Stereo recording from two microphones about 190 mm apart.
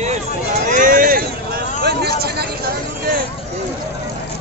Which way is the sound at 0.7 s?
45° right (ahead or behind).